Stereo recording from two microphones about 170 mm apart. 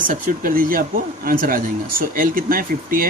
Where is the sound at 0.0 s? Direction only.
50° right (ahead or behind).